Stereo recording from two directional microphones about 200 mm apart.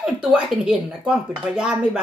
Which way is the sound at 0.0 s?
Centre (ahead or behind).